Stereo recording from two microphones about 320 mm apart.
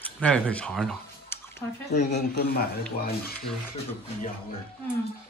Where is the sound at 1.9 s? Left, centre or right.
Left.